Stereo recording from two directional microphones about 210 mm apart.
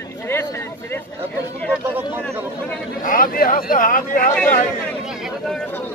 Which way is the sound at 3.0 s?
40° left (ahead or behind).